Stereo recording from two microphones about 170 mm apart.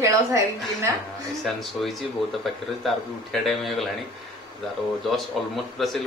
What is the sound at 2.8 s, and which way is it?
A man's voice, centre (ahead or behind).